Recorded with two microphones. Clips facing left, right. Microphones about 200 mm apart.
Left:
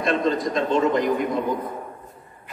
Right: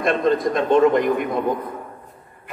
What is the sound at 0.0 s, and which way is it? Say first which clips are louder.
A man's voice: right 3 dB; 55° right (ahead or behind).